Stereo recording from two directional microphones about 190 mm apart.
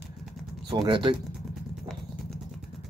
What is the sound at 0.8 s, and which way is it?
Speech, 25° right (ahead or behind).